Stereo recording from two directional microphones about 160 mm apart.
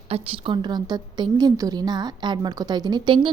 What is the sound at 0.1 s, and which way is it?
A woman's voice, 35° right (ahead or behind).